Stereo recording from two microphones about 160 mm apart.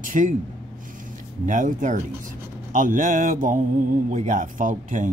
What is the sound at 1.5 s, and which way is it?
Speech, 55° right (ahead or behind).